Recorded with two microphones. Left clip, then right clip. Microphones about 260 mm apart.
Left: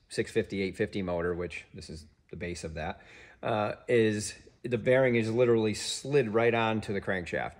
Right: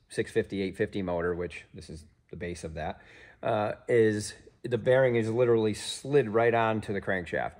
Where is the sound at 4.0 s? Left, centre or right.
Centre.